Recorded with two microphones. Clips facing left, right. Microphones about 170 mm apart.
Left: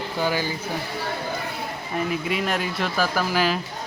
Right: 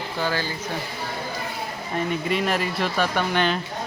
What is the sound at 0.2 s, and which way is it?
Speech, 15° left (ahead or behind).